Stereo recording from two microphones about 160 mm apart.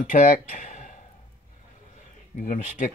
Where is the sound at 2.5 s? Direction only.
55° left (ahead or behind).